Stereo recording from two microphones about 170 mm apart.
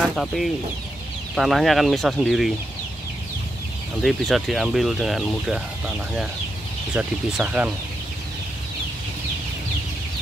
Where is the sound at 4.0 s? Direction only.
Centre (ahead or behind).